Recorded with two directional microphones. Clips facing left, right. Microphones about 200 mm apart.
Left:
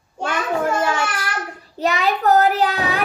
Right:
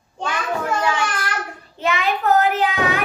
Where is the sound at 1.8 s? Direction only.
40° left (ahead or behind).